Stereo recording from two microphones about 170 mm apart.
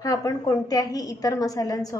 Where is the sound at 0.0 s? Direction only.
20° left (ahead or behind).